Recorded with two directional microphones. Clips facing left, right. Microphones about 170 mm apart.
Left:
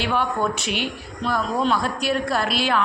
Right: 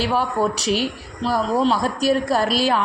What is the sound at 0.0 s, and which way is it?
Speech, 40° right (ahead or behind).